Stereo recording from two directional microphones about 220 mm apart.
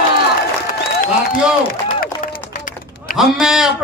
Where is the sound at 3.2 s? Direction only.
Centre (ahead or behind).